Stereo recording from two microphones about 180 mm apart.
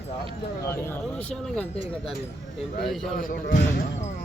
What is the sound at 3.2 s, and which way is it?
Speech, 50° left (ahead or behind).